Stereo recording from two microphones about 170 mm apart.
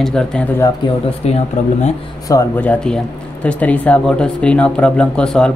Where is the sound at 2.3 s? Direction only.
20° left (ahead or behind).